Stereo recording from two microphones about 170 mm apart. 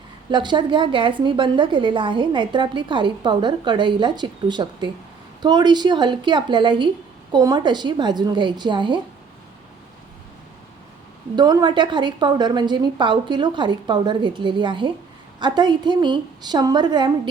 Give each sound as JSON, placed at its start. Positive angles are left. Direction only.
{"t": 0.3, "sound": "a woman's voice", "side_deg": -25}
{"t": 11.3, "sound": "a woman's voice", "side_deg": -25}